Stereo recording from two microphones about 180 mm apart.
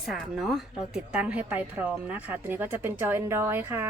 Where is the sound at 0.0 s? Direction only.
Centre (ahead or behind).